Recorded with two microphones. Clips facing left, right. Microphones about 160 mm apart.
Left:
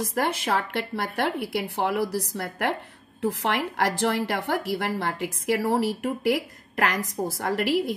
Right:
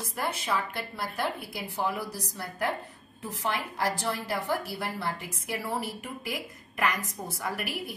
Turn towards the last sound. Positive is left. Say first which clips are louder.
# left 10 dB
turn(degrees=90)